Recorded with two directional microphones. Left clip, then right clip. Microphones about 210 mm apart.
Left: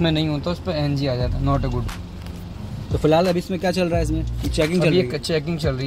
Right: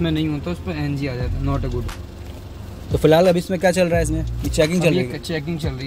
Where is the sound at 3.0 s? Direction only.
25° right (ahead or behind).